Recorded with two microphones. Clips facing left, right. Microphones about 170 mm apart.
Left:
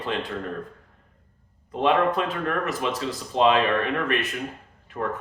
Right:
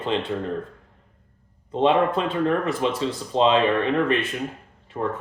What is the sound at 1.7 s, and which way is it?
Speech, 25° right (ahead or behind).